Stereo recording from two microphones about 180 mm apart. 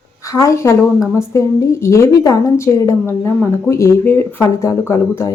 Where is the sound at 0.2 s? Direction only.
20° left (ahead or behind).